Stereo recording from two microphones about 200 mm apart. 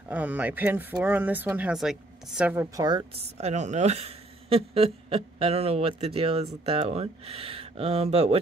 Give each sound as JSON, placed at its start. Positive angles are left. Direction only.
{"t": 0.1, "sound": "speech", "side_deg": -10}
{"t": 3.3, "sound": "speech", "side_deg": -35}